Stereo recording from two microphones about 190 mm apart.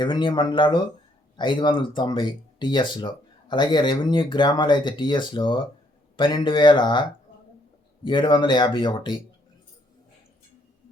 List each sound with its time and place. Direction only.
0.0 s speech: 25° left (ahead or behind)